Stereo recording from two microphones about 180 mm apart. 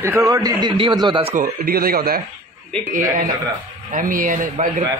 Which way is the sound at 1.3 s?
50° right (ahead or behind).